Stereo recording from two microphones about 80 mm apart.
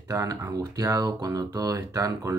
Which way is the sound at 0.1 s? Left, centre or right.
Right.